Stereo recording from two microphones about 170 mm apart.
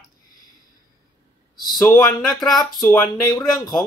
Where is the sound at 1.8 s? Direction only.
20° left (ahead or behind).